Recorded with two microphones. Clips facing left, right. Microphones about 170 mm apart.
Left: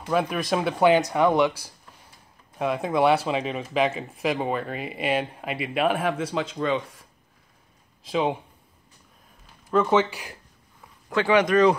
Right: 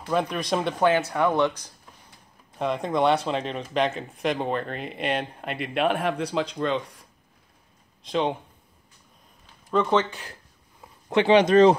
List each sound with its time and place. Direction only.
0.1 s speech: 5° left (ahead or behind)
9.7 s speech: 5° left (ahead or behind)
11.1 s speech: 25° right (ahead or behind)